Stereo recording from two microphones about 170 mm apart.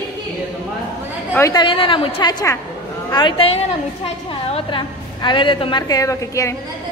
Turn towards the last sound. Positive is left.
turn(degrees=20)  # may be behind; listen again after turning